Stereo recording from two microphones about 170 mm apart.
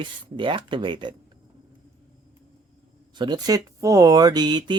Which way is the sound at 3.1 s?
25° right (ahead or behind).